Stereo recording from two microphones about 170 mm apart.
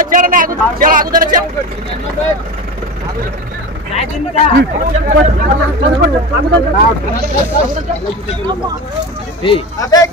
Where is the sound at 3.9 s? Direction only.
40° left (ahead or behind).